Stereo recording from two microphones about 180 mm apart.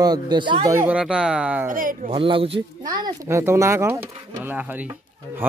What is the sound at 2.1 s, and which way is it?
Speech, 30° right (ahead or behind).